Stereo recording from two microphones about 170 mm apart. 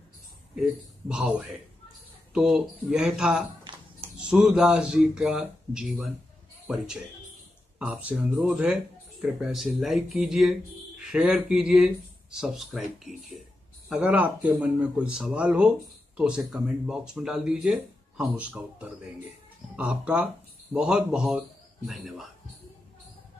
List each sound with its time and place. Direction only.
1.0 s speech: 5° right (ahead or behind)
3.7 s a sound: 30° right (ahead or behind)
4.2 s speech: 5° right (ahead or behind)